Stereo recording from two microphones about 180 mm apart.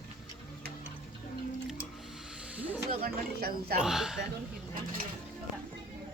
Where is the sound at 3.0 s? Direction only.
60° right (ahead or behind).